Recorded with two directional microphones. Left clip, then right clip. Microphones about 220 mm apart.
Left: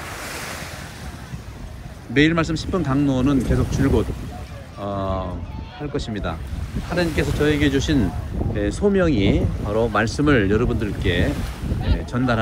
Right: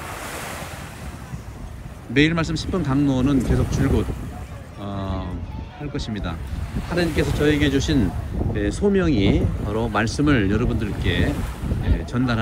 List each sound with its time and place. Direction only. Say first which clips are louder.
2.1 s speech: left 2 dB; centre (ahead or behind)
4.8 s a sound: left 6 dB; centre (ahead or behind)
5.9 s speech: left 3 dB; centre (ahead or behind)